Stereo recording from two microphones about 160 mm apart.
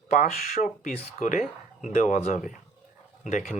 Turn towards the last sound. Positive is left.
turn(degrees=50)  # may be behind; listen again after turning